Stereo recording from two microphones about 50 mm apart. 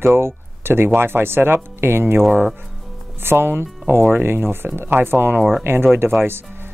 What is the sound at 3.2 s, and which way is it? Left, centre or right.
Speech, right.